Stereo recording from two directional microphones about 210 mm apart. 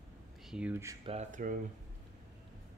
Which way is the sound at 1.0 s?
35° right (ahead or behind).